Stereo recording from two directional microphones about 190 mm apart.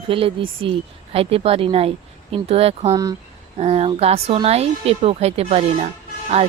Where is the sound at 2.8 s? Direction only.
20° right (ahead or behind).